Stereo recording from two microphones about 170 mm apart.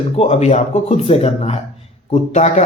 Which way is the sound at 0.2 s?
40° left (ahead or behind).